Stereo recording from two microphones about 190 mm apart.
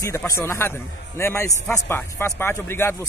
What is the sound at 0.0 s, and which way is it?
Speech, 15° left (ahead or behind).